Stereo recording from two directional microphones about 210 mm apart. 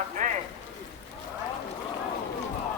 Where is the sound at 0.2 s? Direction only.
40° right (ahead or behind).